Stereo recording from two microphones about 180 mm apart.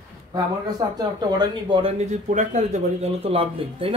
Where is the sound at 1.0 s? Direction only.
25° right (ahead or behind).